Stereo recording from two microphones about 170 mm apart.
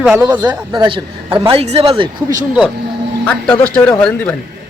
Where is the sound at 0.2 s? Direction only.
25° right (ahead or behind).